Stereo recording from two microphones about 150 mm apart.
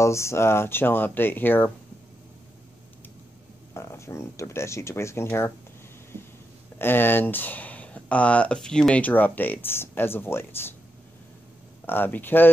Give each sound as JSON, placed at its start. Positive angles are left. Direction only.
{"t": 0.0, "sound": "speech", "side_deg": 20}
{"t": 3.7, "sound": "speech", "side_deg": 20}
{"t": 6.8, "sound": "speech", "side_deg": 15}
{"t": 11.8, "sound": "speech", "side_deg": 15}